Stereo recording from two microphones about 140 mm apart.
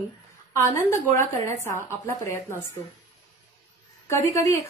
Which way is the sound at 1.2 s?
20° left (ahead or behind).